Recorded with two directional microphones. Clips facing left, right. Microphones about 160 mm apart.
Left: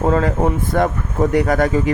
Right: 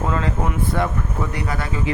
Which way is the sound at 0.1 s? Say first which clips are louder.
Left 7 dB; 40° left (ahead or behind).